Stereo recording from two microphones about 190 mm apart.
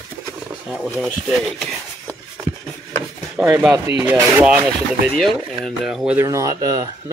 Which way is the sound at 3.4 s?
5° right (ahead or behind).